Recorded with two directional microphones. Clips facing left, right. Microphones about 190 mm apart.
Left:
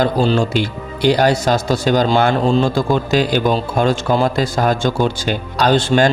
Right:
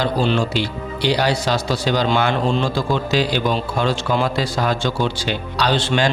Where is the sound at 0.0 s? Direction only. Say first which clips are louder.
Left 4 dB; 40° left (ahead or behind).